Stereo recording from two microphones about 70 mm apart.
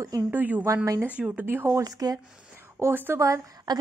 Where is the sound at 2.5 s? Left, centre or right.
Right.